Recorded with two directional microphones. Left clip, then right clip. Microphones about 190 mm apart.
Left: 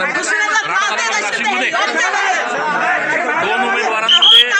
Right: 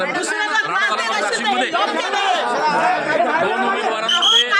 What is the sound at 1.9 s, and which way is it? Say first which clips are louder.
Speech: left 5 dB; 25° right (ahead or behind).